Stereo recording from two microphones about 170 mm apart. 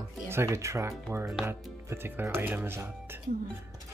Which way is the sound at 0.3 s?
15° right (ahead or behind).